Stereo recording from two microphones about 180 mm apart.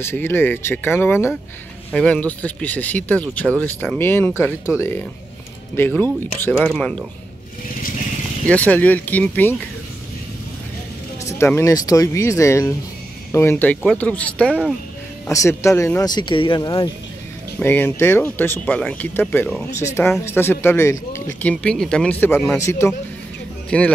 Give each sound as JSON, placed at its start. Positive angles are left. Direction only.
{"t": 0.0, "sound": "speech", "side_deg": 10}
{"t": 8.5, "sound": "speech", "side_deg": 10}
{"t": 11.2, "sound": "speech", "side_deg": 15}
{"t": 17.6, "sound": "speech", "side_deg": 10}